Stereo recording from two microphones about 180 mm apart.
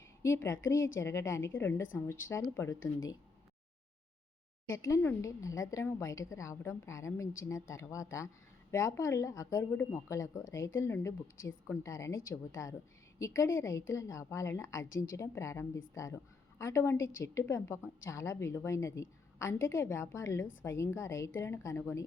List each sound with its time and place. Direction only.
0.2 s a woman's voice: 15° left (ahead or behind)
4.7 s speech: 15° left (ahead or behind)